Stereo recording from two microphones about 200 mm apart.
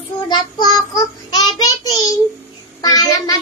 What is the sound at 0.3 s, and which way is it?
Child singing, 20° left (ahead or behind).